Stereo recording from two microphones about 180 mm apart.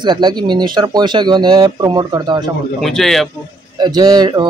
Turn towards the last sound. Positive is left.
turn(degrees=-25)  # may be behind; listen again after turning